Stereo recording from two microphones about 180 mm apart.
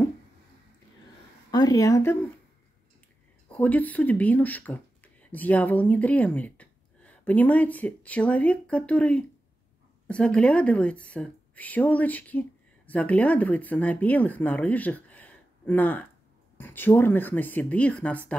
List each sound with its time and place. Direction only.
1.5 s speech: 20° left (ahead or behind)
3.5 s a woman's voice: 10° left (ahead or behind)